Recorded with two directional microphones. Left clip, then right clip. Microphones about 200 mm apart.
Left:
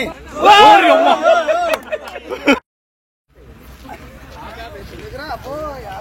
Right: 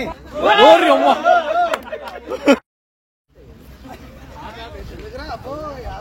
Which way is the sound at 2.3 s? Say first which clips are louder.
Even; 60° right (ahead or behind).